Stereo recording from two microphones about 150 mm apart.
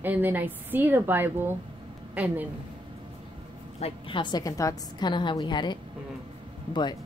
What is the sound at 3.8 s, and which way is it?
A woman's voice, 40° left (ahead or behind).